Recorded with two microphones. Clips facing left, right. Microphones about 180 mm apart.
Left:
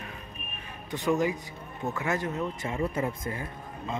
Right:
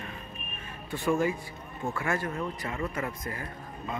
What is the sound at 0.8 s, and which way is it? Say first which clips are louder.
Speech: left 1 dB; 20° left (ahead or behind).